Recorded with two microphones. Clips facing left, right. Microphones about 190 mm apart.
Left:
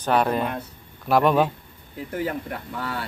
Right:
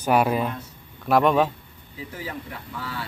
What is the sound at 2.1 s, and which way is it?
Speech, 60° left (ahead or behind).